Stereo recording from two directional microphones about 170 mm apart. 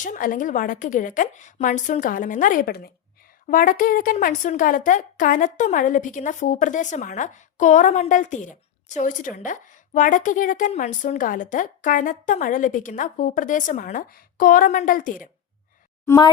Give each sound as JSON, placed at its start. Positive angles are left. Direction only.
{"t": 0.0, "sound": "a woman's voice", "side_deg": 50}
{"t": 16.0, "sound": "speech", "side_deg": 20}